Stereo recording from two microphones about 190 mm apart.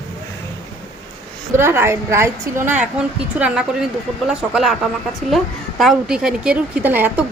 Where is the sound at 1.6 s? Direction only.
10° right (ahead or behind).